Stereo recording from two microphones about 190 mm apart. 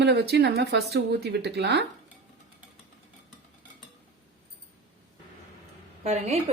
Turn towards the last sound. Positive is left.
turn(degrees=-35)  # may be behind; listen again after turning